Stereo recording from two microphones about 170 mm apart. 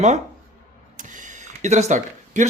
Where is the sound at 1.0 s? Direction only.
50° right (ahead or behind).